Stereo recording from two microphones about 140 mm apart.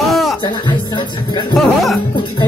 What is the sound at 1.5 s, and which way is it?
Speech, centre (ahead or behind).